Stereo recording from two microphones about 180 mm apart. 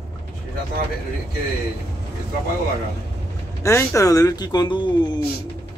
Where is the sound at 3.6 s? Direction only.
15° left (ahead or behind).